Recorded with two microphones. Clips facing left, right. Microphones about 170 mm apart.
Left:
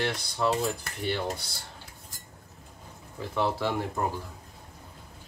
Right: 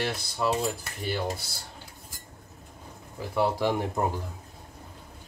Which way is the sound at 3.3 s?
15° right (ahead or behind).